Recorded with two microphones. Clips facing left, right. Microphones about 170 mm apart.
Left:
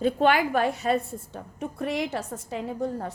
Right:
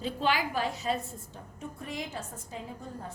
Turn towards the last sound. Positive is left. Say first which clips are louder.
# left 11 dB
turn(degrees=75)  # may be behind; listen again after turning